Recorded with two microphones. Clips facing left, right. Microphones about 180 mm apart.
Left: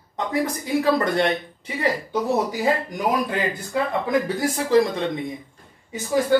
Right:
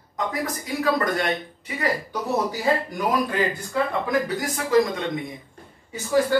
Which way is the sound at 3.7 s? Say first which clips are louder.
Left 5 dB; 25° left (ahead or behind).